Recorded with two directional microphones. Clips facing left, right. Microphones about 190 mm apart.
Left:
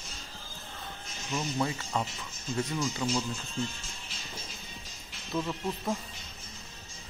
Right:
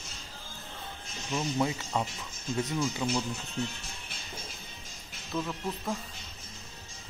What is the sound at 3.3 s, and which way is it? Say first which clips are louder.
Speech: even; 65° right (ahead or behind).